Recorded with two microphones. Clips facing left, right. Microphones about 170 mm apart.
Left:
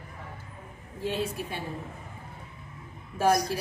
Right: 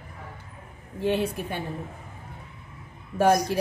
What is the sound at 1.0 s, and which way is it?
Speech, 60° right (ahead or behind).